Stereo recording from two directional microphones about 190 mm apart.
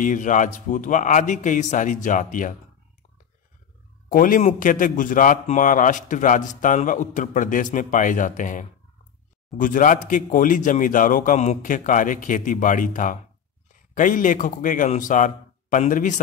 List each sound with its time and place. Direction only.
0.0 s a man's voice: 40° left (ahead or behind)
4.1 s a man's voice: 45° left (ahead or behind)